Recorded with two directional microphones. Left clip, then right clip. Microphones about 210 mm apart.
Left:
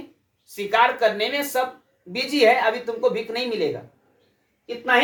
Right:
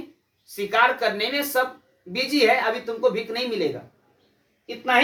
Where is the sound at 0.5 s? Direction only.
20° left (ahead or behind).